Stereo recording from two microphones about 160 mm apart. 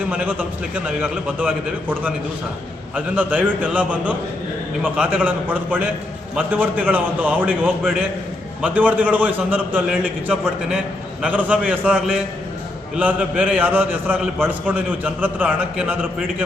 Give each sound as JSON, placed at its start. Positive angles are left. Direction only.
{"t": 0.1, "sound": "a man's voice", "side_deg": -10}
{"t": 13.0, "sound": "a man's voice", "side_deg": -10}